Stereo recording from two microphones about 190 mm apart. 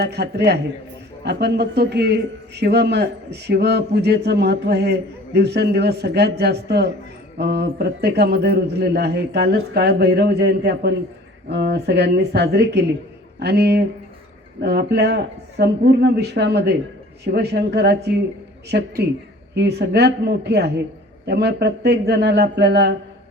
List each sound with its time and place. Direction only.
0.0 s a man's voice: 60° right (ahead or behind)